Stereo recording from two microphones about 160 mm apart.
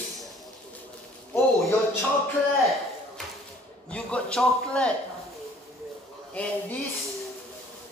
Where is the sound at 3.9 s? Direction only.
5° left (ahead or behind).